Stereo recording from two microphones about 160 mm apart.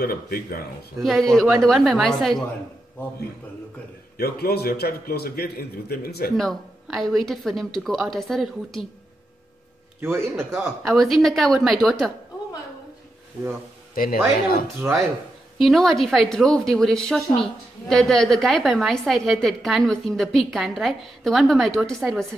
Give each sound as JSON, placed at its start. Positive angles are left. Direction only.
{"t": 0.0, "sound": "a man's voice", "side_deg": 70}
{"t": 1.3, "sound": "a woman's voice", "side_deg": 0}
{"t": 4.2, "sound": "a man's voice", "side_deg": 80}
{"t": 6.3, "sound": "a woman's voice", "side_deg": 0}
{"t": 9.9, "sound": "a man's voice", "side_deg": -15}
{"t": 10.8, "sound": "a woman's voice", "side_deg": 0}
{"t": 13.9, "sound": "speech", "side_deg": 65}
{"t": 14.8, "sound": "a woman's voice", "side_deg": 0}